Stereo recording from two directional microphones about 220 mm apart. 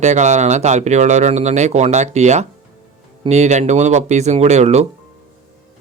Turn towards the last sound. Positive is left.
turn(degrees=-30)  # may be behind; listen again after turning